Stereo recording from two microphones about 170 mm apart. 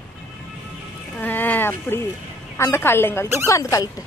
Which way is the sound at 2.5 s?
15° left (ahead or behind).